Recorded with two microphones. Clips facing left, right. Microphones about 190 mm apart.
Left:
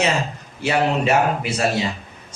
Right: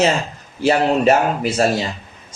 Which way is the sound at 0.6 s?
40° right (ahead or behind).